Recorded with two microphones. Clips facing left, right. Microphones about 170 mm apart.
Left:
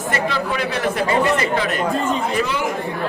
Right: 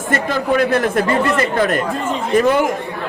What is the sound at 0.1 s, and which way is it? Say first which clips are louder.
A man's voice: right 5 dB; 50° right (ahead or behind).